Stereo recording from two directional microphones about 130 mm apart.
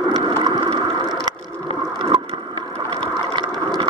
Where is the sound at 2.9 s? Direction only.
40° right (ahead or behind).